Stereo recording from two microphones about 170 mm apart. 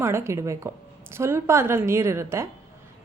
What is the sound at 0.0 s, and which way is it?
A woman's voice, 15° right (ahead or behind).